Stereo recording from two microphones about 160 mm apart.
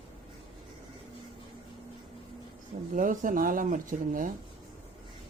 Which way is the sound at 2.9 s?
55° right (ahead or behind).